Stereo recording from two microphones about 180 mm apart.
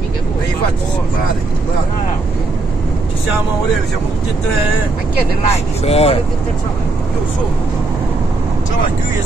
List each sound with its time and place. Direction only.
5.5 s speech: 35° left (ahead or behind)